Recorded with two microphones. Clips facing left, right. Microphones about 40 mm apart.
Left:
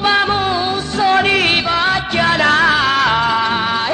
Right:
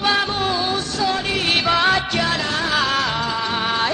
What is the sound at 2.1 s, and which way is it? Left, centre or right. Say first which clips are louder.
Music: left 6 dB; left.